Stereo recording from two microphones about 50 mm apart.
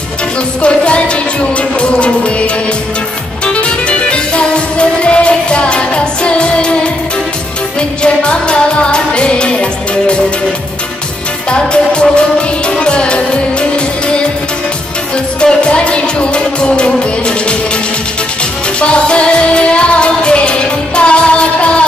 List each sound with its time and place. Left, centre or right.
0.6 s music: left
8.0 s music of asia: left
11.5 s music: centre
15.4 s music: left
18.8 s music: left